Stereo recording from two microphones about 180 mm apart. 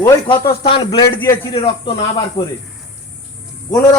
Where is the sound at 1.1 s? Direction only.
10° left (ahead or behind).